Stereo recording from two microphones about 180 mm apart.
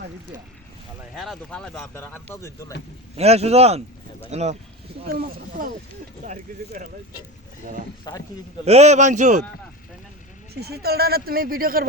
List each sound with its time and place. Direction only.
1.1 s speech: centre (ahead or behind); by 2.7 s 15° left (ahead or behind)
3.2 s a man's voice: 35° right (ahead or behind)
5.0 s speech: 55° right (ahead or behind)
6.2 s speech: 45° right (ahead or behind)
8.1 s a man's voice: 20° left (ahead or behind)
8.6 s a man's voice: 35° right (ahead or behind)
10.5 s speech: 60° right (ahead or behind)